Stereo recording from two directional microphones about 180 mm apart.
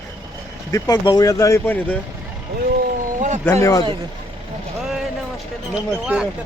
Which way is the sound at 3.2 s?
40° right (ahead or behind).